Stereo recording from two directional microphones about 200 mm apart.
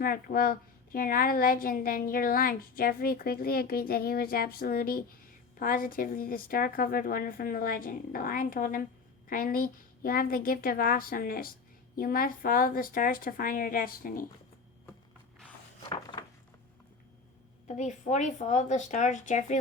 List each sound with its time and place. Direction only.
0.0 s a woman's voice: 45° left (ahead or behind)
15.9 s a sound: 25° left (ahead or behind)
17.7 s speech: 35° left (ahead or behind)